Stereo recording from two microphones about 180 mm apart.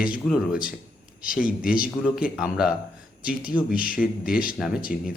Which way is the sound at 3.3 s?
50° left (ahead or behind).